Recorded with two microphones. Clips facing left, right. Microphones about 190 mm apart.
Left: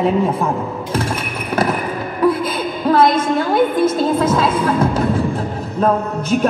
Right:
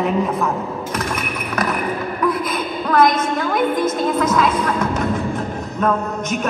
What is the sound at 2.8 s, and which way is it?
Music, 30° left (ahead or behind).